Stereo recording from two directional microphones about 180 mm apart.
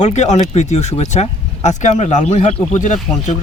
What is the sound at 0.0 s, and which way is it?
Speech, 40° left (ahead or behind).